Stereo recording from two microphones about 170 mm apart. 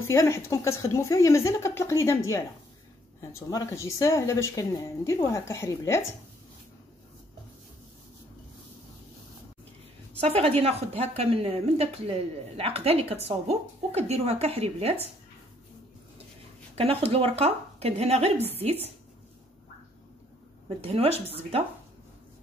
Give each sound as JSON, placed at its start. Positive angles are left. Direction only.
{"t": 0.1, "sound": "speech", "side_deg": 15}
{"t": 10.2, "sound": "speech", "side_deg": -35}
{"t": 16.7, "sound": "speech", "side_deg": -35}
{"t": 20.6, "sound": "speech", "side_deg": -35}